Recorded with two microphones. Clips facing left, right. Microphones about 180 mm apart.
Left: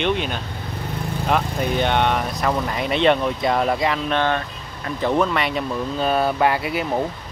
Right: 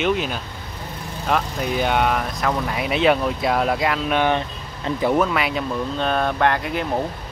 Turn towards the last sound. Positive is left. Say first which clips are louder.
# even
turn(degrees=5)  # may be behind; listen again after turning